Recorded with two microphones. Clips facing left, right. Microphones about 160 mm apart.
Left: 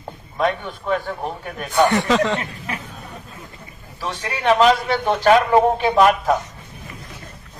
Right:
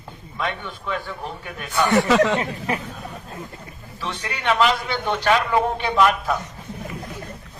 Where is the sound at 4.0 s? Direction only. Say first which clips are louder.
Left 4 dB; 40° left (ahead or behind).